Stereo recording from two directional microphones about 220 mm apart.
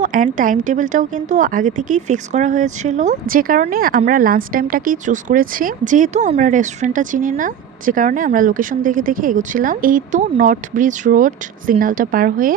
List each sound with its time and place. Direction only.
0.0 s speech: 35° right (ahead or behind)